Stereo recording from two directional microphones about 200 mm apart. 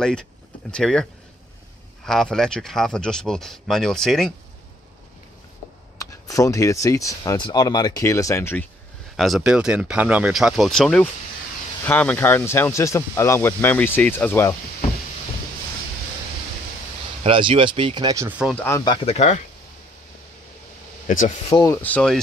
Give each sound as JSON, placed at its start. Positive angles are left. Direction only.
{"t": 0.0, "sound": "speech", "side_deg": 5}
{"t": 2.0, "sound": "speech", "side_deg": 0}
{"t": 5.9, "sound": "speech", "side_deg": 15}
{"t": 9.1, "sound": "speech", "side_deg": 0}
{"t": 17.2, "sound": "speech", "side_deg": -25}
{"t": 18.4, "sound": "speech", "side_deg": 5}
{"t": 19.0, "sound": "speech", "side_deg": 35}
{"t": 21.5, "sound": "speech", "side_deg": 20}
{"t": 21.8, "sound": "speech", "side_deg": 5}